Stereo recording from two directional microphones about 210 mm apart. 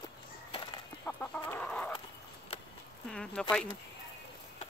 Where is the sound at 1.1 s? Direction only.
10° left (ahead or behind).